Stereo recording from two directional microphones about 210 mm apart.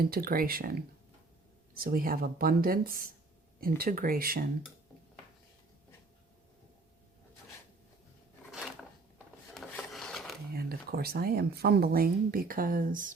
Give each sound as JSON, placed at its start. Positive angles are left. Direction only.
{"t": 0.0, "sound": "speech", "side_deg": -45}
{"t": 9.6, "sound": "a sound", "side_deg": 0}
{"t": 10.5, "sound": "speech", "side_deg": -45}